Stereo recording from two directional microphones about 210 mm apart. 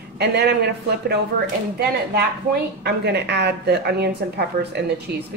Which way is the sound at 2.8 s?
50° right (ahead or behind).